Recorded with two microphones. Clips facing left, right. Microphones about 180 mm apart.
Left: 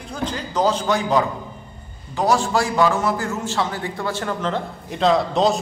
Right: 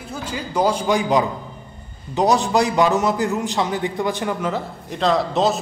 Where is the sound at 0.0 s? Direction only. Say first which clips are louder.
Left 2 dB; 5° right (ahead or behind).